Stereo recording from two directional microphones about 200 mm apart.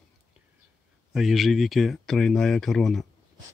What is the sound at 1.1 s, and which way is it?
Speech, centre (ahead or behind).